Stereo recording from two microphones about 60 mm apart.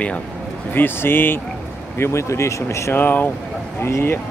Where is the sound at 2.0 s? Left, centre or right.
Left.